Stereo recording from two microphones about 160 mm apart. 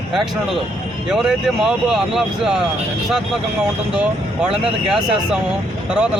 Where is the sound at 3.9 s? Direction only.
10° right (ahead or behind).